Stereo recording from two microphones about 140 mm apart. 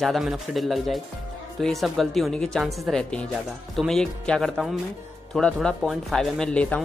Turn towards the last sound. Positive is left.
turn(degrees=10)  # may be behind; listen again after turning